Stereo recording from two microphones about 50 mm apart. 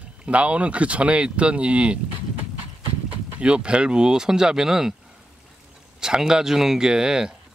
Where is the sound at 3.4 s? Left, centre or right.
Centre.